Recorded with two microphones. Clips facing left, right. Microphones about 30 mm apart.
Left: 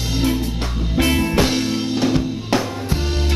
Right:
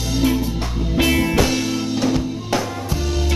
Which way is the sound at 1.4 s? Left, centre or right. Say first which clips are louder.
Even; left.